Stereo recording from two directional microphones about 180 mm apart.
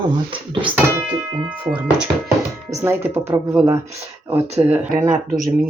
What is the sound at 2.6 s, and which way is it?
Speech, 15° right (ahead or behind).